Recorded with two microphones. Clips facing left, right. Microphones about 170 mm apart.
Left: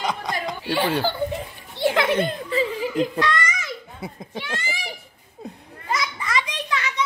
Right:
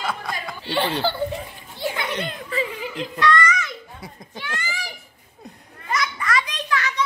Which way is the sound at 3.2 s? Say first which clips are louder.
Right 3 dB; 20° left (ahead or behind).